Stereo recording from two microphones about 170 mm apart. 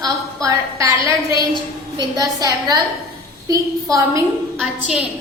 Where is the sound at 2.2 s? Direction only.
20° right (ahead or behind).